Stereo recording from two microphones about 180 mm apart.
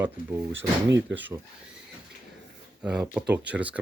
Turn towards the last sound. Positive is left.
turn(degrees=-10)  # may be behind; listen again after turning